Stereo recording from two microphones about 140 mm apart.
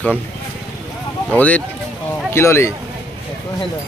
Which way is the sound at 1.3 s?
10° left (ahead or behind).